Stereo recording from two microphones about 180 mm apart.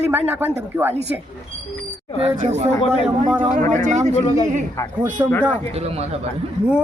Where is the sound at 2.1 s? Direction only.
35° right (ahead or behind).